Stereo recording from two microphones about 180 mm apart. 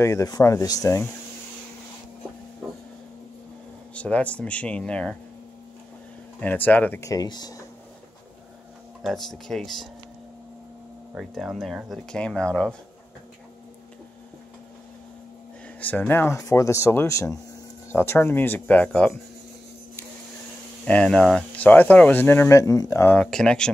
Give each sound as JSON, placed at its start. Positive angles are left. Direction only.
{"t": 0.0, "sound": "speech", "side_deg": 20}
{"t": 3.9, "sound": "speech", "side_deg": 5}
{"t": 6.4, "sound": "speech", "side_deg": 10}
{"t": 9.0, "sound": "speech", "side_deg": 0}
{"t": 11.1, "sound": "speech", "side_deg": 0}
{"t": 15.8, "sound": "speech", "side_deg": 10}
{"t": 20.8, "sound": "speech", "side_deg": 5}
{"t": 23.1, "sound": "speech", "side_deg": 5}